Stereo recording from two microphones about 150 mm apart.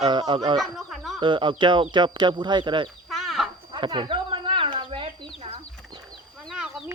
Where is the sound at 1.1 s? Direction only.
35° right (ahead or behind).